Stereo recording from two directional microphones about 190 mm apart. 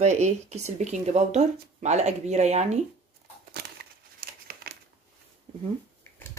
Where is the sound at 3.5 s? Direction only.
55° right (ahead or behind).